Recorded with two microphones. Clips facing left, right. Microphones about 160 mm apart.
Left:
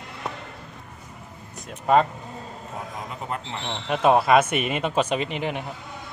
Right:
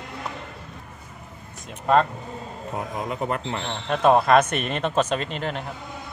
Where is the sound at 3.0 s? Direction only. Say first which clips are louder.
Right 6 dB; 65° right (ahead or behind).